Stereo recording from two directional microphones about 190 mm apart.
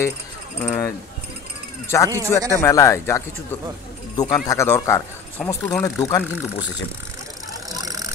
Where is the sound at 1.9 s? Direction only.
15° left (ahead or behind).